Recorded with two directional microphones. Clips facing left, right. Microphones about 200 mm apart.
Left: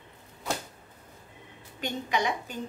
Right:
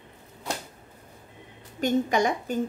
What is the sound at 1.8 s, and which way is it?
Speech, 45° right (ahead or behind).